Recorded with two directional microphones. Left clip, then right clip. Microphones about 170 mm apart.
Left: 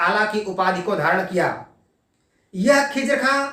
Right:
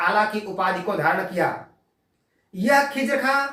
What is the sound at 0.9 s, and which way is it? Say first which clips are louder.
Speech: left 2 dB; 25° left (ahead or behind).